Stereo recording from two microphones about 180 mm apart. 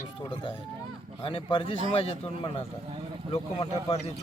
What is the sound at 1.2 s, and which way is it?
Speech, 30° left (ahead or behind).